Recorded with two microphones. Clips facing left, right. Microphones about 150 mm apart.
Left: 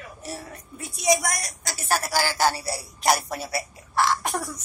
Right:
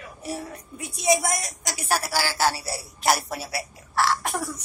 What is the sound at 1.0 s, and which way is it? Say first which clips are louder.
A woman's voice: right 1 dB; 25° right (ahead or behind).